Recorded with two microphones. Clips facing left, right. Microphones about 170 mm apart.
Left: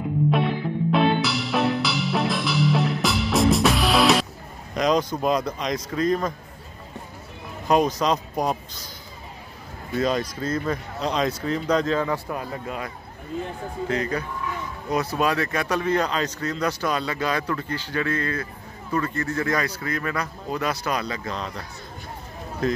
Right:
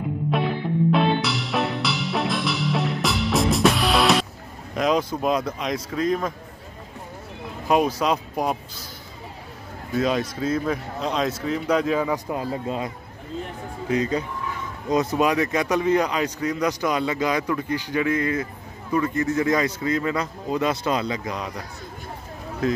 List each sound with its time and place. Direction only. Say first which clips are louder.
0.9 s music: left 1 dB; centre (ahead or behind)
4.7 s speech: even; 5° right (ahead or behind)
7.6 s speech: even; 5° right (ahead or behind)
9.9 s a man's voice: right 1 dB; centre (ahead or behind)
12.3 s a man's voice: right 4 dB; 25° right (ahead or behind); by 22.8 s 5° right (ahead or behind)